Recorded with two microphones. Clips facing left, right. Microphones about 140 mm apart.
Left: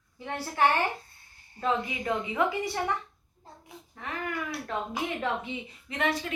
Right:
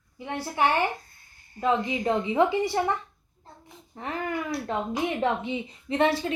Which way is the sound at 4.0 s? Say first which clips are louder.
Right 4 dB; 30° right (ahead or behind).